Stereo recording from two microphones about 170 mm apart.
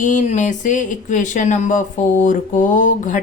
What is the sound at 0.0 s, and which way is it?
Speech, 45° left (ahead or behind).